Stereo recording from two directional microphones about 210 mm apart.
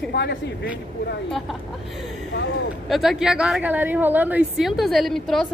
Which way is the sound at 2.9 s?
Centre (ahead or behind).